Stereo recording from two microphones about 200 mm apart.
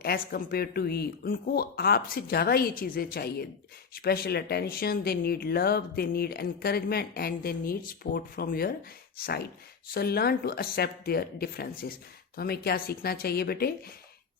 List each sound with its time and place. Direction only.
0.0 s speech: 50° left (ahead or behind)